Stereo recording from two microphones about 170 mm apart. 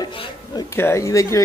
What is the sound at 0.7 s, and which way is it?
Speech, 15° left (ahead or behind).